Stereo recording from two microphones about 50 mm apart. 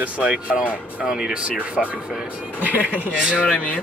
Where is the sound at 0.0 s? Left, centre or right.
Right.